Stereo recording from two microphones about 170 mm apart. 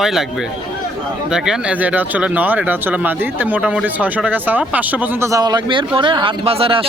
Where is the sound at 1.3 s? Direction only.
5° right (ahead or behind).